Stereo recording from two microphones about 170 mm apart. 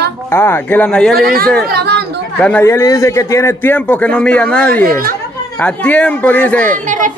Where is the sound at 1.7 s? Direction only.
75° right (ahead or behind).